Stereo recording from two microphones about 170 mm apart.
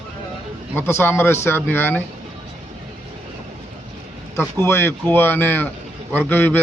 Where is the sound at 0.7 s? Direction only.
15° left (ahead or behind).